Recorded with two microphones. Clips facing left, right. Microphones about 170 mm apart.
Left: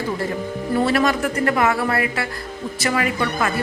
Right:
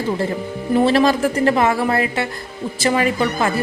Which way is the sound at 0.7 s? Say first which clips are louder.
Right 4 dB; 25° right (ahead or behind).